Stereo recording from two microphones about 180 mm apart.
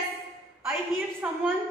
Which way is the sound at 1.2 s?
5° right (ahead or behind).